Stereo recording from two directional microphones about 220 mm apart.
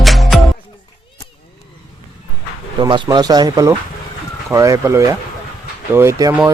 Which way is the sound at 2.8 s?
20° right (ahead or behind).